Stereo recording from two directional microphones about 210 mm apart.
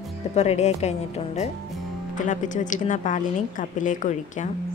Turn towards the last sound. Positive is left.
turn(degrees=35)  # may be behind; listen again after turning